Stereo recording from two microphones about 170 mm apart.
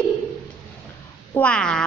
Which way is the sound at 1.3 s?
5° left (ahead or behind).